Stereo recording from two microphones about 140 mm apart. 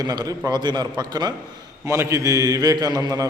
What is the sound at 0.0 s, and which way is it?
A man's voice, 30° right (ahead or behind).